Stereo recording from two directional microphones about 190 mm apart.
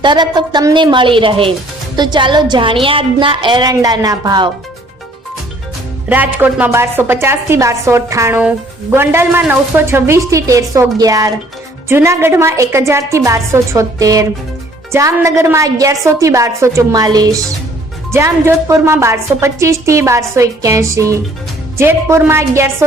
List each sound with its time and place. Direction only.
0.0 s speech: 25° right (ahead or behind)
6.1 s a woman's voice: 10° right (ahead or behind)